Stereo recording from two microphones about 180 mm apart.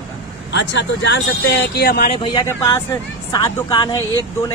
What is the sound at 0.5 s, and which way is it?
Speech, 75° left (ahead or behind).